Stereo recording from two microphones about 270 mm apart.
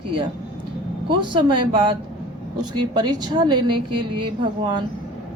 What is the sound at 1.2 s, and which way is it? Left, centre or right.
Speech, centre.